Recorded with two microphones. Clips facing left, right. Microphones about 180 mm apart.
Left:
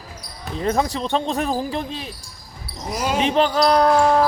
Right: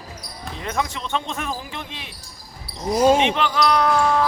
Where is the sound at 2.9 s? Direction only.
30° right (ahead or behind).